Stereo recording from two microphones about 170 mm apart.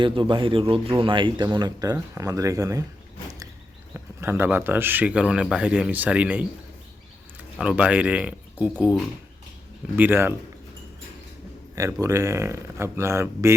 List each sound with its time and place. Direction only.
0.0 s speech: 30° right (ahead or behind)
3.9 s speech: 15° right (ahead or behind)
11.7 s speech: 20° right (ahead or behind)